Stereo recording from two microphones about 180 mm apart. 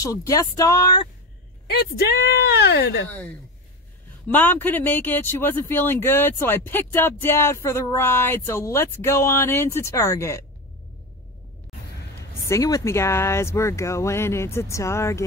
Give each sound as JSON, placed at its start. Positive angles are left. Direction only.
{"t": 0.0, "sound": "speech", "side_deg": 20}
{"t": 1.7, "sound": "speech", "side_deg": 60}
{"t": 3.1, "sound": "speech", "side_deg": 10}
{"t": 12.4, "sound": "speech", "side_deg": 20}